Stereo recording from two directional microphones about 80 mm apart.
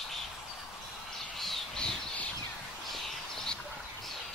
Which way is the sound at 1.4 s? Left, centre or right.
Centre.